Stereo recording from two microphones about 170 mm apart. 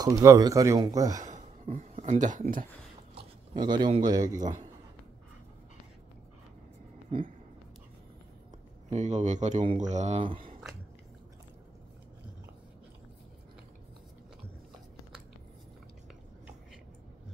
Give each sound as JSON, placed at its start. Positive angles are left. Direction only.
{"t": 0.0, "sound": "speech", "side_deg": -20}
{"t": 1.3, "sound": "a sound", "side_deg": -40}
{"t": 3.2, "sound": "speech", "side_deg": -25}
{"t": 8.9, "sound": "speech", "side_deg": -45}